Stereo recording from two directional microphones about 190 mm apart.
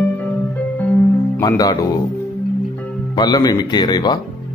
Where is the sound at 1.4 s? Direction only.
20° left (ahead or behind).